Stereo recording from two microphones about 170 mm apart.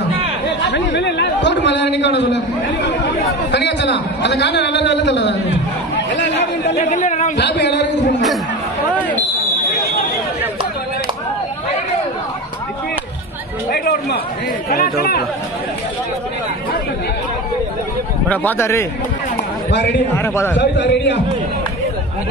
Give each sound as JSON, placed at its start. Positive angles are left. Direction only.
{"t": 0.7, "sound": "a man's voice", "side_deg": 90}
{"t": 6.1, "sound": "chatter", "side_deg": 90}
{"t": 6.7, "sound": "speech", "side_deg": 45}
{"t": 7.3, "sound": "a sound", "side_deg": 90}
{"t": 13.7, "sound": "a sound", "side_deg": 65}
{"t": 14.7, "sound": "speech", "side_deg": 65}
{"t": 18.3, "sound": "a man's voice", "side_deg": 10}
{"t": 20.2, "sound": "a man's voice", "side_deg": 15}
{"t": 20.5, "sound": "a man's voice", "side_deg": 90}